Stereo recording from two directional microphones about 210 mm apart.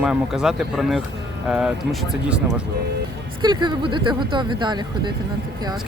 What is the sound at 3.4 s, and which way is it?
Speech, 20° right (ahead or behind).